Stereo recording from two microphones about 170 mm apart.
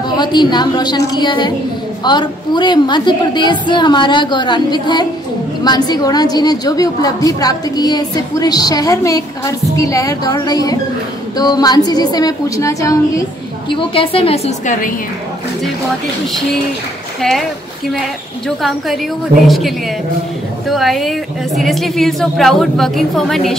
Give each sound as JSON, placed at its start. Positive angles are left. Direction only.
{"t": 0.1, "sound": "a woman's voice", "side_deg": 25}
{"t": 13.7, "sound": "a woman's voice", "side_deg": 30}
{"t": 17.2, "sound": "a woman's voice", "side_deg": 0}
{"t": 18.6, "sound": "a woman's voice", "side_deg": 0}